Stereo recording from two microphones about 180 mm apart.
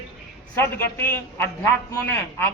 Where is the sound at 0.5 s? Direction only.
10° left (ahead or behind).